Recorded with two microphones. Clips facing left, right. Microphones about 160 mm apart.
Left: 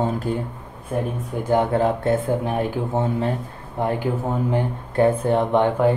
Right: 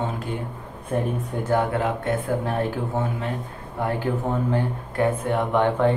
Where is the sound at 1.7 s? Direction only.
30° left (ahead or behind).